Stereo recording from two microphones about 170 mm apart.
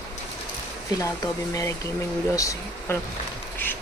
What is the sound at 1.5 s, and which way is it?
Speech, 20° left (ahead or behind).